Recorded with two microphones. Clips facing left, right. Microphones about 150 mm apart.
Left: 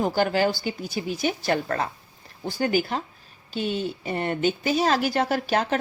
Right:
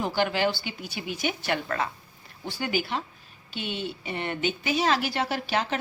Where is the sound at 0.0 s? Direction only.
45° left (ahead or behind).